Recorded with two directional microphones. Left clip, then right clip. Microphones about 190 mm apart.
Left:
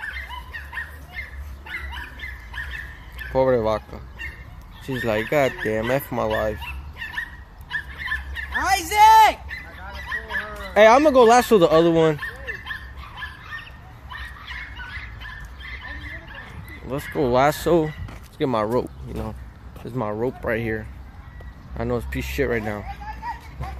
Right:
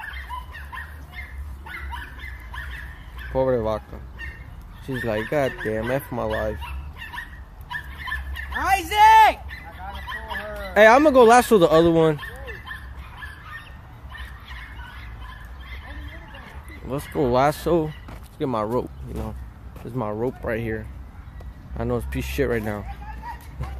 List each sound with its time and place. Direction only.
0.0 s dog: 55° right (ahead or behind)
3.3 s speech: 10° left (ahead or behind)
5.0 s speech: 10° left (ahead or behind)
6.6 s fowl: 55° right (ahead or behind)
7.7 s dog: 55° right (ahead or behind)
8.5 s a sound: 20° left (ahead or behind)
9.5 s goose: 55° right (ahead or behind)
10.7 s speech: 10° right (ahead or behind)
12.2 s fowl: 55° left (ahead or behind)
16.9 s speech: 5° right (ahead or behind)
21.7 s speech: centre (ahead or behind)
23.2 s music: 40° left (ahead or behind)